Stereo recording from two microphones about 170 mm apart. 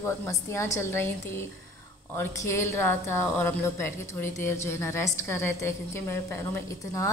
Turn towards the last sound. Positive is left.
turn(degrees=15)  # may be behind; listen again after turning